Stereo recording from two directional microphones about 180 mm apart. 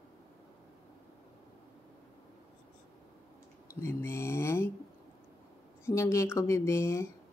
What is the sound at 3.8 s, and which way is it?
Mantra, 15° left (ahead or behind).